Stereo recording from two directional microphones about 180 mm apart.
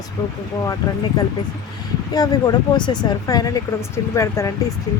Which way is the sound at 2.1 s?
20° left (ahead or behind).